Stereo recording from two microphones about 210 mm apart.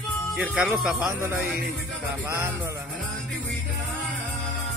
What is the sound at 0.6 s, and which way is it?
Speech, 5° right (ahead or behind).